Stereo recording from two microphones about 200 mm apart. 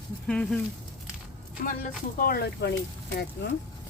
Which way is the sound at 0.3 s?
5° left (ahead or behind).